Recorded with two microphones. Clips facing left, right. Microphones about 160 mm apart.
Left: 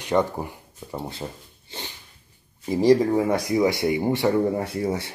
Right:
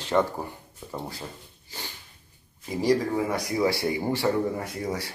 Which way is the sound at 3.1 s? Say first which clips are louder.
Left 5 dB; 20° left (ahead or behind).